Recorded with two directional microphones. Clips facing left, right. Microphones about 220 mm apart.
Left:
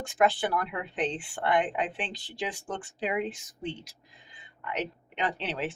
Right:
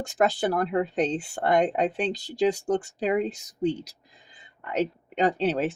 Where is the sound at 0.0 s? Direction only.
40° right (ahead or behind).